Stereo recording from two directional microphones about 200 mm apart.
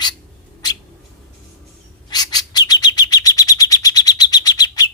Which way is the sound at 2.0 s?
20° left (ahead or behind).